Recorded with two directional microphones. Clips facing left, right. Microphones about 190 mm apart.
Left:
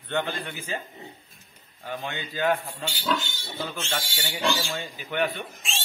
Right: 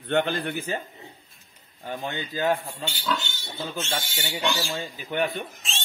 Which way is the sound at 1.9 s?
40° right (ahead or behind).